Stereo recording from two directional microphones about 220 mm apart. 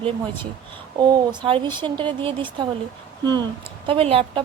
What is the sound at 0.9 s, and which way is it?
A woman's voice, 20° right (ahead or behind).